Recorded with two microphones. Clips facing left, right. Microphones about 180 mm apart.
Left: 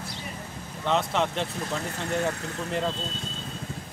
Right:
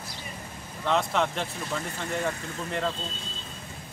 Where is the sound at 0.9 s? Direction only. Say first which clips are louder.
Even; centre (ahead or behind).